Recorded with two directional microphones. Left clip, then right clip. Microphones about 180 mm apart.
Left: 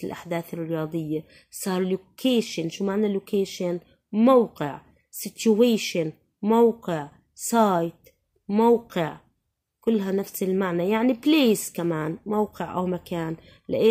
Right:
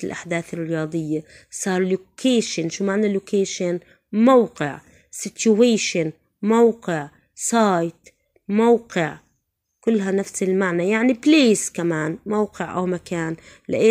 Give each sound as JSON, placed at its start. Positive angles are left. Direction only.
{"t": 0.0, "sound": "speech", "side_deg": -15}
{"t": 4.4, "sound": "a woman's voice", "side_deg": -15}